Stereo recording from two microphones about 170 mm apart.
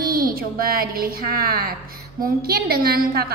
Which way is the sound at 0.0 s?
60° right (ahead or behind).